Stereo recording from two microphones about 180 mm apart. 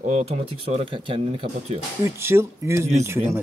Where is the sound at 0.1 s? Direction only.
35° right (ahead or behind).